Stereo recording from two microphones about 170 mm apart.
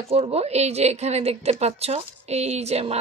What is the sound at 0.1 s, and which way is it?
A woman's voice, 35° right (ahead or behind).